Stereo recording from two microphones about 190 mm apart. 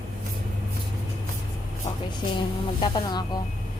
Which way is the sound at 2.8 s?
25° left (ahead or behind).